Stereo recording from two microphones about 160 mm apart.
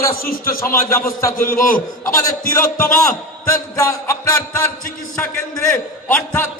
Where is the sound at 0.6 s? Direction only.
15° left (ahead or behind).